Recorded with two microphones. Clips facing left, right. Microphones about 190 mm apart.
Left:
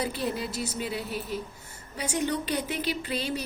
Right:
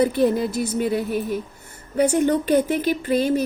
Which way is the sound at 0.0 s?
55° right (ahead or behind).